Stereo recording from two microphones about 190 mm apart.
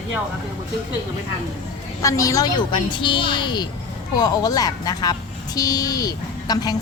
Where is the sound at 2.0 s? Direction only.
15° left (ahead or behind).